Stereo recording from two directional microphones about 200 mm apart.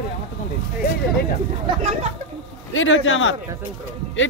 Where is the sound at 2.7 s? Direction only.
75° left (ahead or behind).